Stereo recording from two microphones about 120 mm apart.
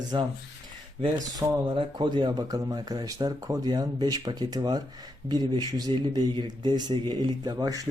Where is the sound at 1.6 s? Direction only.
40° right (ahead or behind).